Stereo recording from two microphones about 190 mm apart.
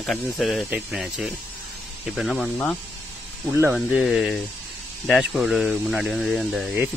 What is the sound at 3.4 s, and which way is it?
Speech, 15° right (ahead or behind).